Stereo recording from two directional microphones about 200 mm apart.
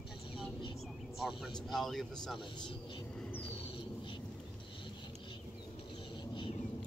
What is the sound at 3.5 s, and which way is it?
Bird, 25° left (ahead or behind).